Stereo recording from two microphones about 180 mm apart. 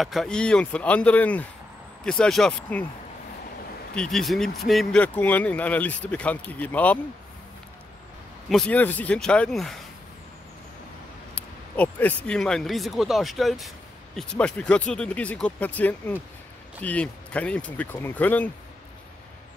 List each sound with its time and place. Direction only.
0.0 s speech: centre (ahead or behind)
3.9 s speech: 5° left (ahead or behind)
8.5 s speech: 5° left (ahead or behind)
11.3 s speech: 5° left (ahead or behind)